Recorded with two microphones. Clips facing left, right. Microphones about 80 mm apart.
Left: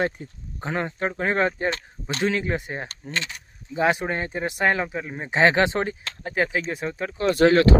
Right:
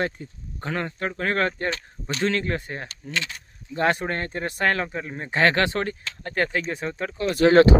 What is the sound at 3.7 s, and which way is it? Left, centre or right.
Speech, centre.